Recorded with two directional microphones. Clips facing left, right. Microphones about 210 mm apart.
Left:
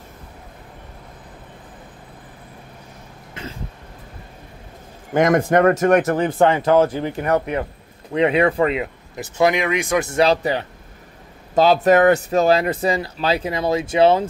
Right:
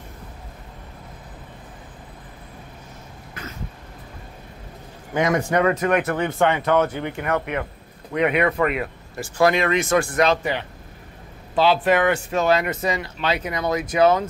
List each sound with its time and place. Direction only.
3.4 s throat clearing: 25° left (ahead or behind)
5.1 s speech: 50° left (ahead or behind); by 14.2 s 30° left (ahead or behind)